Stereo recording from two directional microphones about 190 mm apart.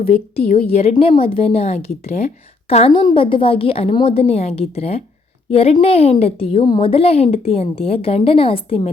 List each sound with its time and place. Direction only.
0.0 s speech: 50° left (ahead or behind)
0.5 s a woman's voice: 35° left (ahead or behind)